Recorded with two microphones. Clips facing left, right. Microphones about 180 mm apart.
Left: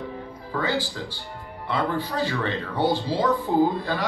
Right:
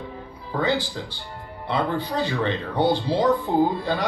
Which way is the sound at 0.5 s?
20° right (ahead or behind).